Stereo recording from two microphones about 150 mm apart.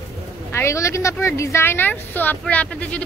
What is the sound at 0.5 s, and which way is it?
A woman's voice, 20° left (ahead or behind).